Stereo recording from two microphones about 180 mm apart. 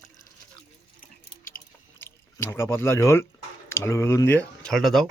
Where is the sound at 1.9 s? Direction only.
15° left (ahead or behind).